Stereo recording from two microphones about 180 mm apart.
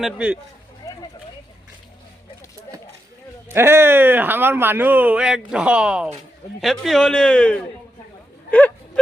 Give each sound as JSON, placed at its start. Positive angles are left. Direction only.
{"t": 0.0, "sound": "a man's voice", "side_deg": -5}
{"t": 0.8, "sound": "a sound", "side_deg": 15}
{"t": 3.5, "sound": "a man's voice", "side_deg": -15}